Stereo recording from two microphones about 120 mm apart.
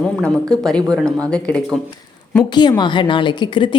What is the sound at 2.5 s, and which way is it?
A woman's voice, 40° left (ahead or behind).